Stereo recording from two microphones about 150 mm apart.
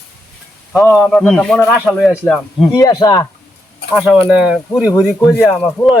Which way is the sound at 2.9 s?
25° left (ahead or behind).